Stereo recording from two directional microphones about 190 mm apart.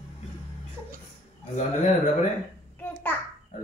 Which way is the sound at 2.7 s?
10° left (ahead or behind).